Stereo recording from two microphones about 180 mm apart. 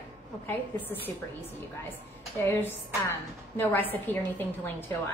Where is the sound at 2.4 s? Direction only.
10° left (ahead or behind).